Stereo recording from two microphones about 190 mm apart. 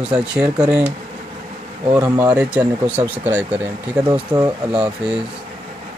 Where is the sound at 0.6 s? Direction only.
10° right (ahead or behind).